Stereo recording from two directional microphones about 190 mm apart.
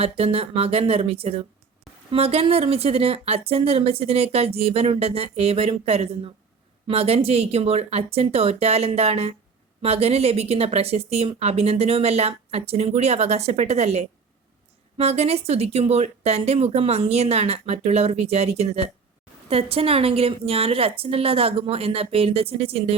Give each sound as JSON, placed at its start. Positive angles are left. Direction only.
{"t": 0.0, "sound": "a woman's voice", "side_deg": -30}